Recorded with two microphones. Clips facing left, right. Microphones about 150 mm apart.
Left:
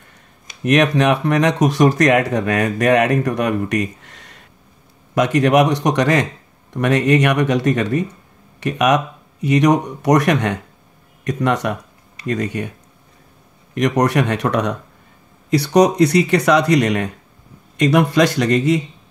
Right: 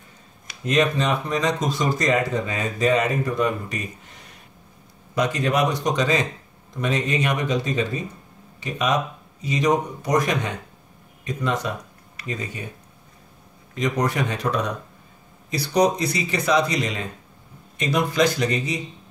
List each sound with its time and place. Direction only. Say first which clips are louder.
0.7 s speech: left 6 dB; 75° left (ahead or behind)
13.7 s speech: left 7 dB; 75° left (ahead or behind)